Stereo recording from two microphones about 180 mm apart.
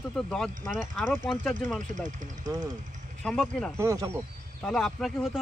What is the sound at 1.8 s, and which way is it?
Speech, 45° right (ahead or behind).